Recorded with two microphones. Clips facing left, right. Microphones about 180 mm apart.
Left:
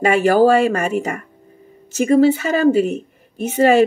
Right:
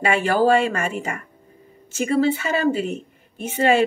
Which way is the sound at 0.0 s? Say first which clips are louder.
Left 6 dB; 40° left (ahead or behind).